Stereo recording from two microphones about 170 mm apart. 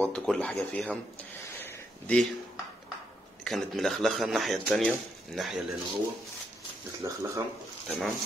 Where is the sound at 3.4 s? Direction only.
Centre (ahead or behind).